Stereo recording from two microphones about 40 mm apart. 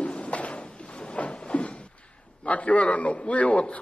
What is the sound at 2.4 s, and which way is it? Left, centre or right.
A man's voice, left.